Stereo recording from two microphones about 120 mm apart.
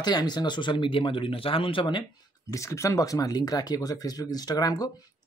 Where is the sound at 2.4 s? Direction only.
25° left (ahead or behind).